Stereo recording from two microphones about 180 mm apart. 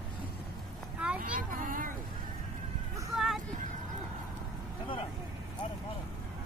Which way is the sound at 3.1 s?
Centre (ahead or behind).